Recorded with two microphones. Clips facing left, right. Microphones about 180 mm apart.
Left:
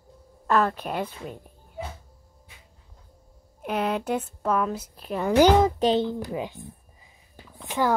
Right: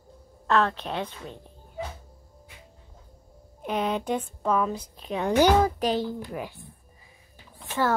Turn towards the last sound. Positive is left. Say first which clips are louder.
# left 1 dB
turn(degrees=15)  # may be behind; listen again after turning